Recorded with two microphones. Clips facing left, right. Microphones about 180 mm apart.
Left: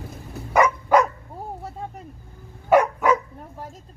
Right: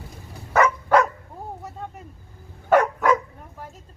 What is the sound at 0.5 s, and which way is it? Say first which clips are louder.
Dog: left 1 dB; 15° left (ahead or behind).